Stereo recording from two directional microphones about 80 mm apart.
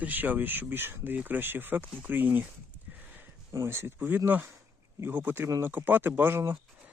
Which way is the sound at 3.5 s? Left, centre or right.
Right.